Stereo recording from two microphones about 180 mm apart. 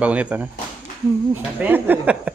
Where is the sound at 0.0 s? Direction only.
10° right (ahead or behind).